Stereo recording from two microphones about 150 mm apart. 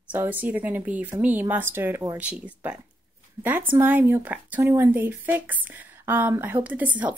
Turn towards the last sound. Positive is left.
turn(degrees=-10)  # may be behind; listen again after turning